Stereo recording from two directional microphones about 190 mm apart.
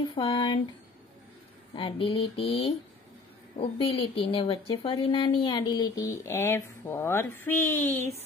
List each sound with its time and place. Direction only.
0.1 s a woman's voice: 25° left (ahead or behind)
1.8 s a woman's voice: 25° left (ahead or behind)